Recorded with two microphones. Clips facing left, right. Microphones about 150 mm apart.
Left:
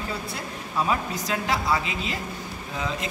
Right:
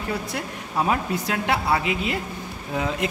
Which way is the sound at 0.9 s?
60° right (ahead or behind).